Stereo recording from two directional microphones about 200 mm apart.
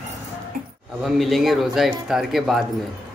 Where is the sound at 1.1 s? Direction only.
Centre (ahead or behind).